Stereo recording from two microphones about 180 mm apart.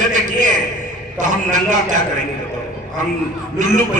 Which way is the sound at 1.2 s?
45° right (ahead or behind).